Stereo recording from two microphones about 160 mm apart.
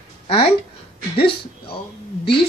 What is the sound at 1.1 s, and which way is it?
Speech, 35° left (ahead or behind).